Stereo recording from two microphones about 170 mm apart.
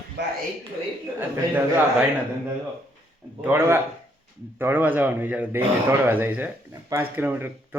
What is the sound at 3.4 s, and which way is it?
Speech, 15° right (ahead or behind).